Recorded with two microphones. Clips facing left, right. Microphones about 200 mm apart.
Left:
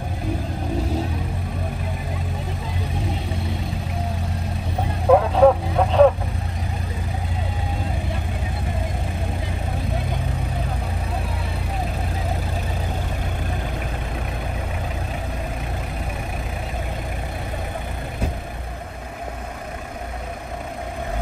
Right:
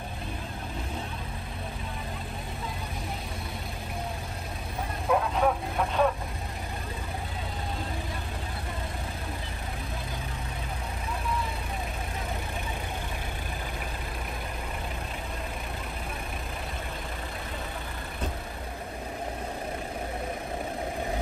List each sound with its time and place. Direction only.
5.0 s vehicle: 70° left (ahead or behind)